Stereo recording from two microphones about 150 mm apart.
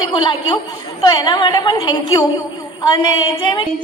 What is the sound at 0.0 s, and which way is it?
A woman's voice, 35° left (ahead or behind).